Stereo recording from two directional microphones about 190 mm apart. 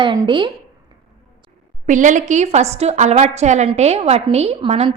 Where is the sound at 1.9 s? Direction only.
40° right (ahead or behind).